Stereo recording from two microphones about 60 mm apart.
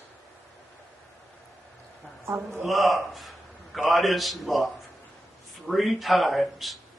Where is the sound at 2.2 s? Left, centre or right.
Right.